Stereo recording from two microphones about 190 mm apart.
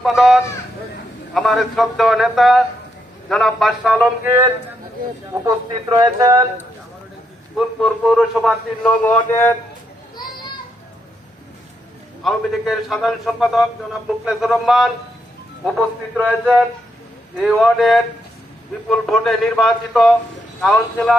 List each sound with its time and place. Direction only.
0.0 s a man's voice: centre (ahead or behind); by 6.4 s 20° right (ahead or behind)
7.8 s a man's voice: centre (ahead or behind)
9.0 s speech: 10° left (ahead or behind)
12.2 s a man's voice: centre (ahead or behind)
16.1 s a man's voice: centre (ahead or behind)